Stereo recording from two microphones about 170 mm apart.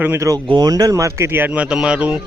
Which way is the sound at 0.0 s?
15° right (ahead or behind).